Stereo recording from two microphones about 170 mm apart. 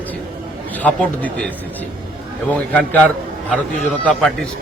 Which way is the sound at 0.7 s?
10° left (ahead or behind).